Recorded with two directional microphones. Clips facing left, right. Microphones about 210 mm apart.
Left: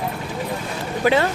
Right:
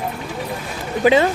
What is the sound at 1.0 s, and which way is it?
Speech, 20° right (ahead or behind).